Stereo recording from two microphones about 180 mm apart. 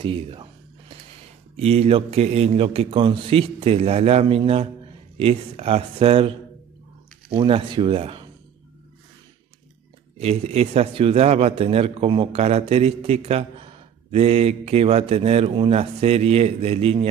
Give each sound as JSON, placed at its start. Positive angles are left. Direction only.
{"t": 0.0, "sound": "a sound", "side_deg": -30}
{"t": 1.6, "sound": "a man's voice", "side_deg": -35}
{"t": 7.3, "sound": "speech", "side_deg": -30}
{"t": 10.1, "sound": "a man's voice", "side_deg": -35}